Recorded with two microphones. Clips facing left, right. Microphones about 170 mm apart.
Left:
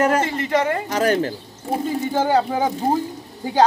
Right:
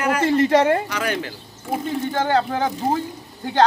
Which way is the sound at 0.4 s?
35° right (ahead or behind).